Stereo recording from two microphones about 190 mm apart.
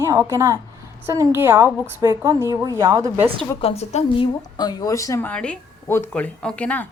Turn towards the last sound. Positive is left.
turn(degrees=5)  # may be behind; listen again after turning